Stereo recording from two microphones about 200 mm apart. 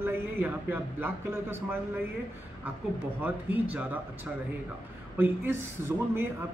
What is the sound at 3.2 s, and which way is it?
Speech, 10° right (ahead or behind).